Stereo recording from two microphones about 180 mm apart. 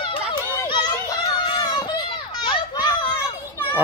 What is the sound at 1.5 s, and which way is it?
Run, 20° left (ahead or behind).